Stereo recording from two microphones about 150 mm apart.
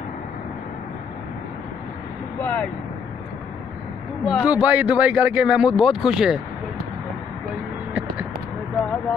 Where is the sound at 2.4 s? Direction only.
10° left (ahead or behind).